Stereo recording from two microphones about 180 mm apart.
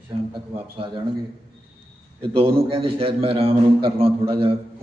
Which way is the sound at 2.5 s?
30° right (ahead or behind).